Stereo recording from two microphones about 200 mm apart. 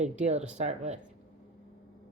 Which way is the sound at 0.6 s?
35° right (ahead or behind).